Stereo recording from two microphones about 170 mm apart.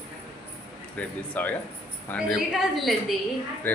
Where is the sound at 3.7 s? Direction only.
10° left (ahead or behind).